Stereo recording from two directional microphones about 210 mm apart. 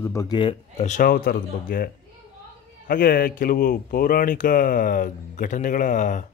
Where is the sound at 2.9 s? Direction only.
45° left (ahead or behind).